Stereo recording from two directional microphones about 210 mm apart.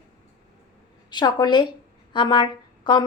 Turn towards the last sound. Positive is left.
turn(degrees=20)  # may be behind; listen again after turning